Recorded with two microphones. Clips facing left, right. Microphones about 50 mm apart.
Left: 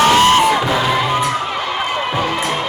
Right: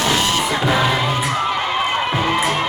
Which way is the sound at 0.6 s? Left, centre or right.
Centre.